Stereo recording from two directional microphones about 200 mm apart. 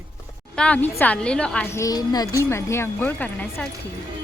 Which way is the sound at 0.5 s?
5° left (ahead or behind).